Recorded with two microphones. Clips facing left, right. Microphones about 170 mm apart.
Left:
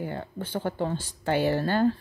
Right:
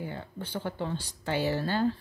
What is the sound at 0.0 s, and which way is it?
Speech, 50° left (ahead or behind).